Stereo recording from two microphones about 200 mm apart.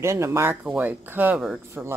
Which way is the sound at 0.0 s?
15° right (ahead or behind).